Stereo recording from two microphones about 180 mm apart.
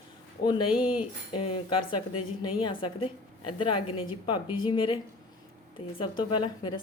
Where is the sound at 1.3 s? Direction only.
30° left (ahead or behind).